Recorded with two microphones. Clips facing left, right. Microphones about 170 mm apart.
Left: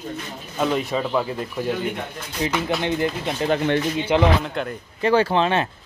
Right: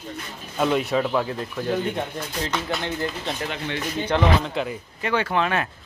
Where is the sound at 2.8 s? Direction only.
15° left (ahead or behind).